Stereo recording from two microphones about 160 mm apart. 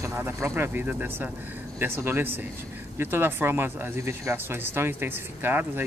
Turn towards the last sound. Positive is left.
turn(degrees=-10)  # may be behind; listen again after turning